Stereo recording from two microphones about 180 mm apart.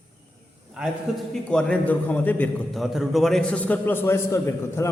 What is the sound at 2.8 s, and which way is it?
A man's voice, centre (ahead or behind).